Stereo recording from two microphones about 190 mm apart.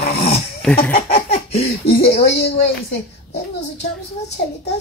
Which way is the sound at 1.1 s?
30° left (ahead or behind).